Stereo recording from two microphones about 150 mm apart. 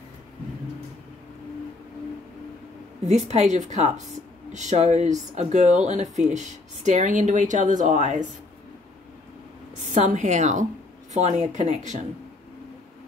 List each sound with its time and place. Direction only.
3.1 s speech: 45° right (ahead or behind)
9.9 s speech: 55° right (ahead or behind)